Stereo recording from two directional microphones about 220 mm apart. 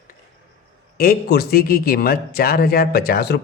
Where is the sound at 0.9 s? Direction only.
45° left (ahead or behind).